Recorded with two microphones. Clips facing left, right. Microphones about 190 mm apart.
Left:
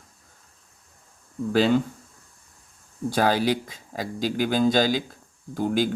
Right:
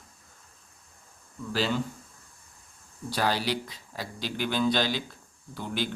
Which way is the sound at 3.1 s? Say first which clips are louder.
Left 6 dB; 50° left (ahead or behind).